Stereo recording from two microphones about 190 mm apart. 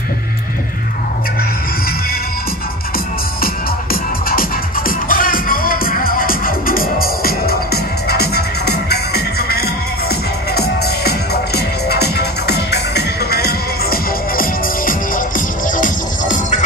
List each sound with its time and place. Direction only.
3.9 s music: 50° left (ahead or behind)